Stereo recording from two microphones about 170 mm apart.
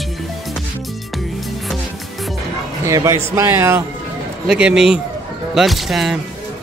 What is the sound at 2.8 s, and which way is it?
Speech, 20° right (ahead or behind).